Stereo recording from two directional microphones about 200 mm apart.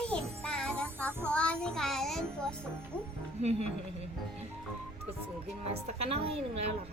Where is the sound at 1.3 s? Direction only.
5° left (ahead or behind).